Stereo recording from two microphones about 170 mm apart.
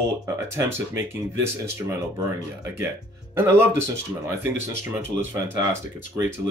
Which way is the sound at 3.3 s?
15° right (ahead or behind).